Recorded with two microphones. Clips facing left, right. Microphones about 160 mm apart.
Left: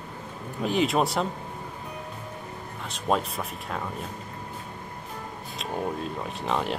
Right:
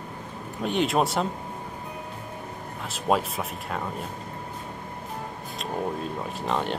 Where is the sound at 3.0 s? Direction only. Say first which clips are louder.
Right 2 dB; centre (ahead or behind).